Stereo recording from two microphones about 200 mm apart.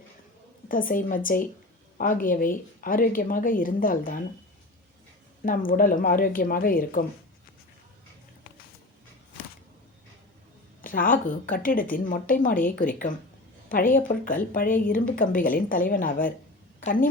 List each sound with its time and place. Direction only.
0.7 s speech: 45° left (ahead or behind)
5.5 s speech: 45° left (ahead or behind)
10.8 s a woman's voice: 45° left (ahead or behind)